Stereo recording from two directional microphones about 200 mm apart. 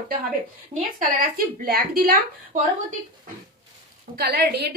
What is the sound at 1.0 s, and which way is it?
A woman's voice, 45° right (ahead or behind).